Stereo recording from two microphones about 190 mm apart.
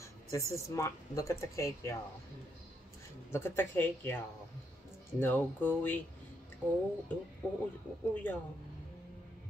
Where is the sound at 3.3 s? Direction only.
15° left (ahead or behind).